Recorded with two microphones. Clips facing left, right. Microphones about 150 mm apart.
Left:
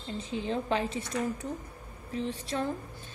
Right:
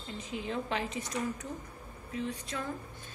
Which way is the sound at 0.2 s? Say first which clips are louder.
Left 3 dB; 30° left (ahead or behind).